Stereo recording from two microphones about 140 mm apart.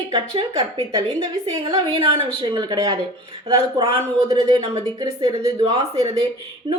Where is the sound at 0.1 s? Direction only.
40° right (ahead or behind).